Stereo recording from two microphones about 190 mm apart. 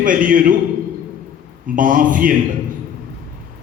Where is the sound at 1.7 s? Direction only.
45° right (ahead or behind).